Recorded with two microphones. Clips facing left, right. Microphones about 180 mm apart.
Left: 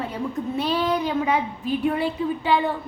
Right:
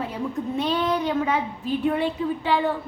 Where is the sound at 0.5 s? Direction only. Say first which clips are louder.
Left 1 dB; 5° left (ahead or behind).